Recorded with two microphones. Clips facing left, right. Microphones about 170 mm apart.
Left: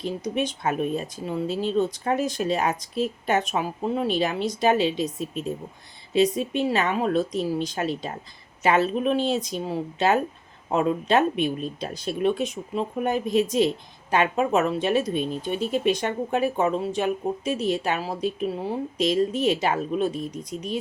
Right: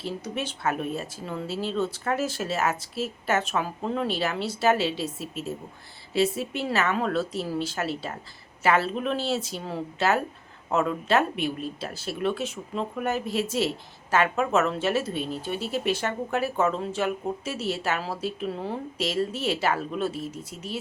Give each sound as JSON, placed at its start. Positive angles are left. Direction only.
{"t": 0.0, "sound": "speech", "side_deg": 20}
{"t": 6.1, "sound": "speech", "side_deg": 20}